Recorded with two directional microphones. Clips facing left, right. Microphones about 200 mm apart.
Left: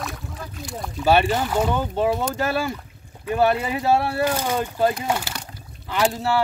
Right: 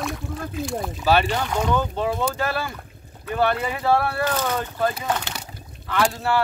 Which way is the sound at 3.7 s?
25° left (ahead or behind).